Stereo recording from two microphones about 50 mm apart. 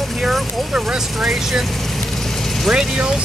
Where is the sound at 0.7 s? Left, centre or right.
Centre.